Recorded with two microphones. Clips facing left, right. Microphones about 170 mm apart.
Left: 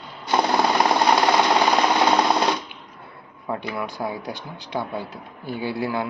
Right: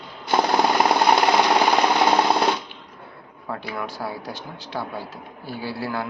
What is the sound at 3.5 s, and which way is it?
Speech, 15° left (ahead or behind).